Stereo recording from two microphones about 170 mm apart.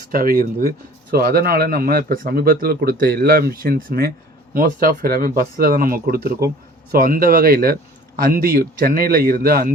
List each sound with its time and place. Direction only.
0.1 s a man's voice: 60° right (ahead or behind)